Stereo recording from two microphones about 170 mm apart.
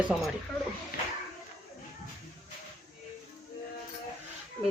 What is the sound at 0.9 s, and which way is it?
Music, 55° left (ahead or behind).